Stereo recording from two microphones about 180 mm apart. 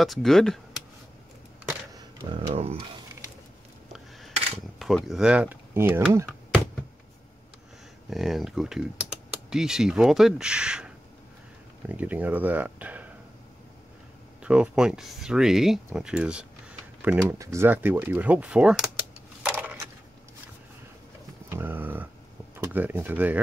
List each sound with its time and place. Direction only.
0.0 s speech: centre (ahead or behind)
2.0 s a sound: 20° right (ahead or behind)
2.5 s speech: 35° right (ahead or behind)
4.7 s speech: centre (ahead or behind)
8.1 s speech: centre (ahead or behind)
14.4 s speech: 5° right (ahead or behind)
19.4 s a sound: 10° right (ahead or behind)
21.5 s a sound: 10° right (ahead or behind)
22.6 s speech: 10° right (ahead or behind)